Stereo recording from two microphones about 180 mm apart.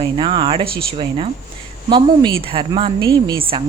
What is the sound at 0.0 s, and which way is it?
A woman's voice, 25° right (ahead or behind).